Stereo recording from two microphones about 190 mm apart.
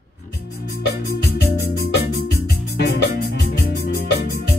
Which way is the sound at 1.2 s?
60° left (ahead or behind).